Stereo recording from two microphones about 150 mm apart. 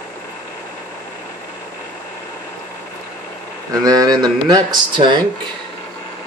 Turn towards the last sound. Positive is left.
turn(degrees=-30)  # may be behind; listen again after turning